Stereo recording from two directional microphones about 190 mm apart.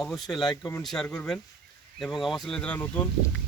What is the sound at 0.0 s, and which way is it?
Speech, centre (ahead or behind).